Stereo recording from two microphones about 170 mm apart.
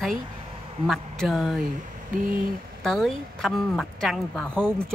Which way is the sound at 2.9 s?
Centre (ahead or behind).